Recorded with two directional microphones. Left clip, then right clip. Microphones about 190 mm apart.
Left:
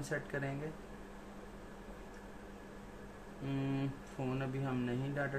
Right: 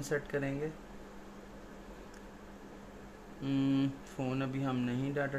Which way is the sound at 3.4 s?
50° right (ahead or behind).